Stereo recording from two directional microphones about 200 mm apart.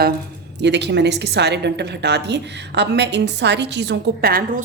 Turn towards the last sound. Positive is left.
turn(degrees=-50)  # may be behind; listen again after turning